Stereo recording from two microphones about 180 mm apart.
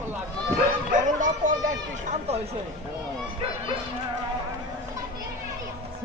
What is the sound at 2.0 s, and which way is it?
Speech, 35° right (ahead or behind).